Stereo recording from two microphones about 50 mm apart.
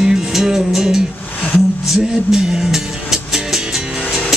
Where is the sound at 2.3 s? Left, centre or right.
Centre.